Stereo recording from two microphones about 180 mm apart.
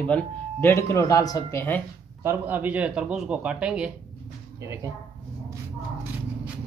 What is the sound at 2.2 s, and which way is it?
A man's voice, 10° right (ahead or behind).